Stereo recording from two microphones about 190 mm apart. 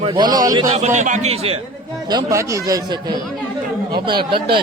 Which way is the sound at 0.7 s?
40° right (ahead or behind).